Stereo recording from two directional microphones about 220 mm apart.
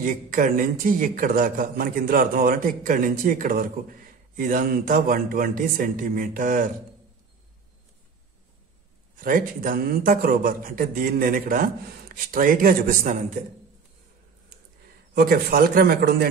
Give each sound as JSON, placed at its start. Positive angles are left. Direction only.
{"t": 0.0, "sound": "a man's voice", "side_deg": -40}
{"t": 9.2, "sound": "a man's voice", "side_deg": -40}
{"t": 15.1, "sound": "speech", "side_deg": -45}